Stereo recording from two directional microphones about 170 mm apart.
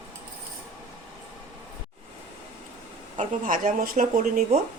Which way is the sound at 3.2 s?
50° right (ahead or behind).